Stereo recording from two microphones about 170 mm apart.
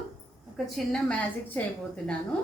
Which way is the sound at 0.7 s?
5° left (ahead or behind).